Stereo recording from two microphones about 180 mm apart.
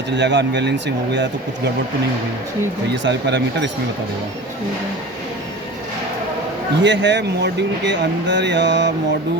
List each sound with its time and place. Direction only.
0.1 s speech: 75° right (ahead or behind)
2.9 s speech: 75° right (ahead or behind)
6.8 s speech: 80° right